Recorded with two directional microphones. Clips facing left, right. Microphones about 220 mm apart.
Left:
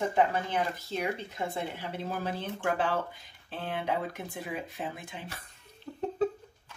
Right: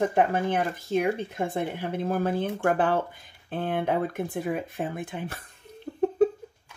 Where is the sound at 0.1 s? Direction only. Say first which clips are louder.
Right 4 dB; 55° right (ahead or behind).